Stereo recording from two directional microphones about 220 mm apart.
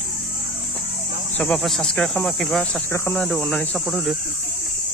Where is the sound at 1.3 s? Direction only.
5° left (ahead or behind).